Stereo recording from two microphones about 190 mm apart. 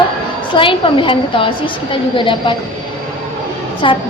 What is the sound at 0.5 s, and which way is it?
A woman's voice, 25° left (ahead or behind).